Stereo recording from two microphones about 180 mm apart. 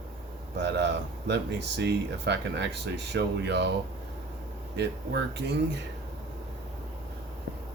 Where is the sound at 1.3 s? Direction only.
70° right (ahead or behind).